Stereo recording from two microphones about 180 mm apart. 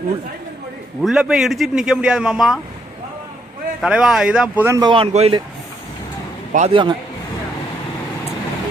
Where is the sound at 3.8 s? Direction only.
5° right (ahead or behind); by 5.4 s 35° right (ahead or behind).